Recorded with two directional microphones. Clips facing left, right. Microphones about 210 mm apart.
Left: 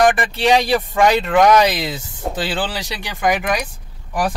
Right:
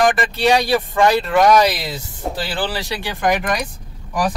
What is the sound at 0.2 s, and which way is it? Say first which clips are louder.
Speech: even; 20° left (ahead or behind).